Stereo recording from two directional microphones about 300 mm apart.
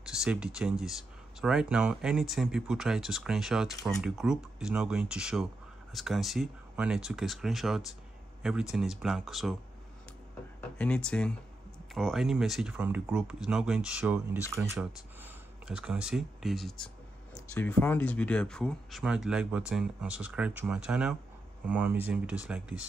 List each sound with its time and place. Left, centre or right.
0.0 s speech: centre
10.8 s speech: centre